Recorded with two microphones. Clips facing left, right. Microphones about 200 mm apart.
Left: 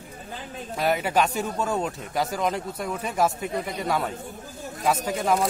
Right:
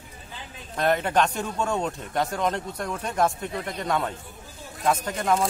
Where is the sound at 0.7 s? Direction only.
5° left (ahead or behind).